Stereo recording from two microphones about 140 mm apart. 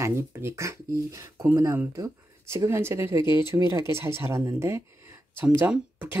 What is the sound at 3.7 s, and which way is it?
Speech, 20° right (ahead or behind).